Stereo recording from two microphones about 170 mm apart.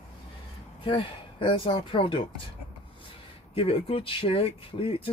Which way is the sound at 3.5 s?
35° left (ahead or behind).